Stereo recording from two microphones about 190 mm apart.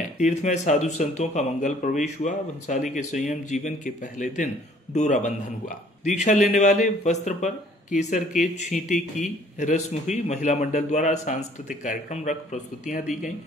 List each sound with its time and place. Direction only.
0.0 s speech: 40° left (ahead or behind)